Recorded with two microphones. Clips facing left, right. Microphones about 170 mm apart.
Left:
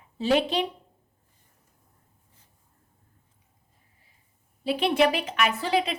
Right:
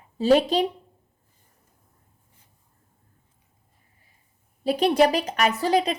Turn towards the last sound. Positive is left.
turn(degrees=-40)  # may be behind; listen again after turning